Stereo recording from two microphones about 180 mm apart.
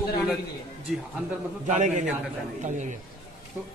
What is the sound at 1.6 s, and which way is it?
A man's voice, 40° right (ahead or behind).